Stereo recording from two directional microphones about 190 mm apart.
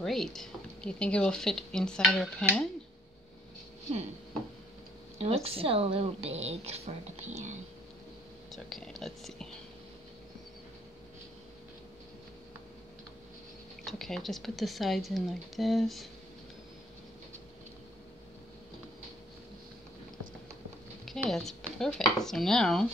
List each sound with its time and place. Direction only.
0.0 s speech: centre (ahead or behind)
5.2 s speech: 30° right (ahead or behind)
8.5 s speech: centre (ahead or behind)
13.8 s speech: centre (ahead or behind)
21.0 s speech: centre (ahead or behind)